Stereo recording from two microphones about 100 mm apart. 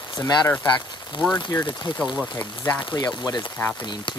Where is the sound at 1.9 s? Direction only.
60° left (ahead or behind).